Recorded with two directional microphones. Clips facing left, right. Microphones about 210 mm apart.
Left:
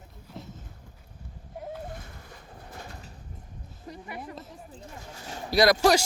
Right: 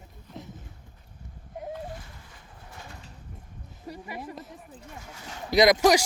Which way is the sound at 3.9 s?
10° right (ahead or behind).